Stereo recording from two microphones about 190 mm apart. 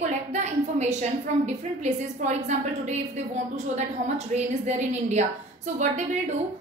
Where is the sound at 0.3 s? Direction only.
35° right (ahead or behind).